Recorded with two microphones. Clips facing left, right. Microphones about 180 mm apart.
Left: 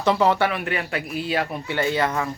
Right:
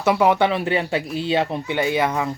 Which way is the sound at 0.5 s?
30° right (ahead or behind).